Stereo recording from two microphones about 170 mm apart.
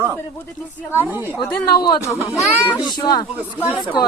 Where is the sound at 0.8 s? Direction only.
15° left (ahead or behind).